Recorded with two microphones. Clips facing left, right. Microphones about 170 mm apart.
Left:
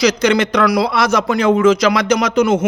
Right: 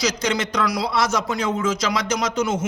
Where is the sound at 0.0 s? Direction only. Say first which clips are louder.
Left 9 dB; 65° left (ahead or behind).